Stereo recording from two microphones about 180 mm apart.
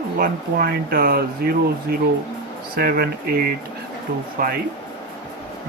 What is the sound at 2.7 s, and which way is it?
Speech, 60° right (ahead or behind).